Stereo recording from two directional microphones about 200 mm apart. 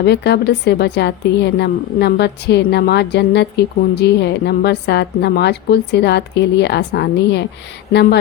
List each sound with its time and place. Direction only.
0.0 s a woman's voice: 55° left (ahead or behind)